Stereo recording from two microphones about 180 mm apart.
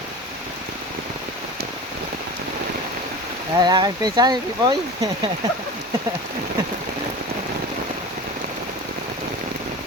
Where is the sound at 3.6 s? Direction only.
25° right (ahead or behind).